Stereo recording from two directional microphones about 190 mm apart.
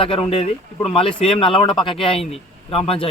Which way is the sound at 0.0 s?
30° left (ahead or behind).